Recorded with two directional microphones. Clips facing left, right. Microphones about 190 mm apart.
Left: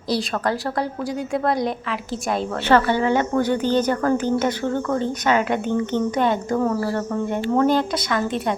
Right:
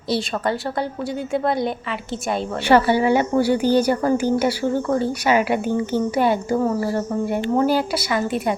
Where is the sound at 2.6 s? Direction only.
10° right (ahead or behind).